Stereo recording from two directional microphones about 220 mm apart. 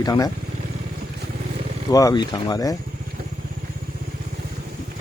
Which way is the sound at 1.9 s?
15° left (ahead or behind).